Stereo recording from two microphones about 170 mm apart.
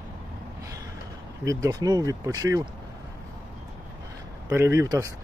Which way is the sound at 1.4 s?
20° right (ahead or behind).